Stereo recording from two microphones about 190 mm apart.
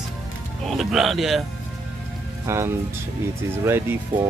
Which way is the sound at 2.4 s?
15° right (ahead or behind).